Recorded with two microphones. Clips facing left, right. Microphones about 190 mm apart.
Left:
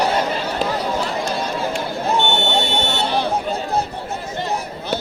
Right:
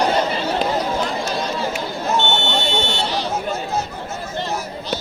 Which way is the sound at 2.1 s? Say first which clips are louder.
Left 1 dB; 15° left (ahead or behind).